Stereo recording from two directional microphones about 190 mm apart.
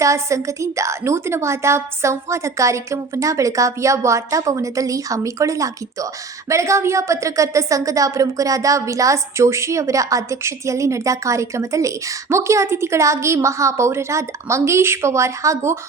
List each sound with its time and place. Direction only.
0.0 s a woman's voice: 15° right (ahead or behind)